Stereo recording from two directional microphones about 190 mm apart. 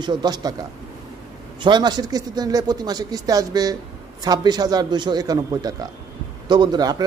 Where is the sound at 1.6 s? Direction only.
25° right (ahead or behind).